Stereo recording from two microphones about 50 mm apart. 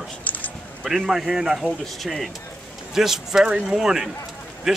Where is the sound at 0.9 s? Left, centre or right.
Centre.